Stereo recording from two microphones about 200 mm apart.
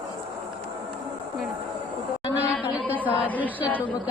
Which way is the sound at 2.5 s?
Centre (ahead or behind).